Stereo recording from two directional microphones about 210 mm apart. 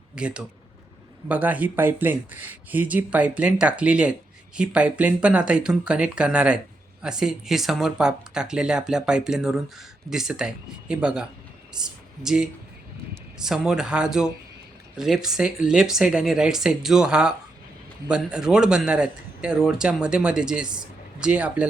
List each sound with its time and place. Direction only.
0.2 s speech: 5° right (ahead or behind)